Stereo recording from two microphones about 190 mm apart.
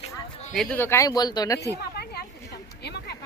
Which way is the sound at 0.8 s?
15° left (ahead or behind).